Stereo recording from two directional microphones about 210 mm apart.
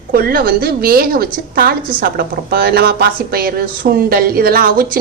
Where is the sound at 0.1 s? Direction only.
45° right (ahead or behind).